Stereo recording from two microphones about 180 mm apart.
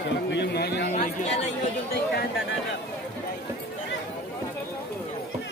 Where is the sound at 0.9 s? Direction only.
35° left (ahead or behind).